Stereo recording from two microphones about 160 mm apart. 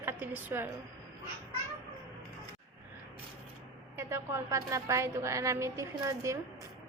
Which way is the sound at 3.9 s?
15° right (ahead or behind).